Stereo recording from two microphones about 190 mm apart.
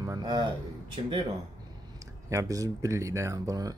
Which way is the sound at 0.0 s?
20° right (ahead or behind).